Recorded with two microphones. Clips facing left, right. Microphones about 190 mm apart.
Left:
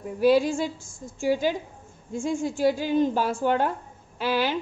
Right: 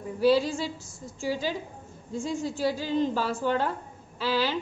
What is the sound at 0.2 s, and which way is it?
A woman's voice, 50° left (ahead or behind).